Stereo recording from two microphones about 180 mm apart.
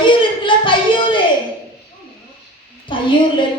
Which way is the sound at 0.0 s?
25° left (ahead or behind).